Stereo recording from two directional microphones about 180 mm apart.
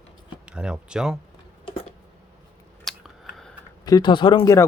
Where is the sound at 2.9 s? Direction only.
Centre (ahead or behind).